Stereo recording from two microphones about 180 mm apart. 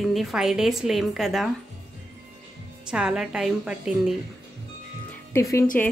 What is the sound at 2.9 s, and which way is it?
A woman's voice, 5° right (ahead or behind).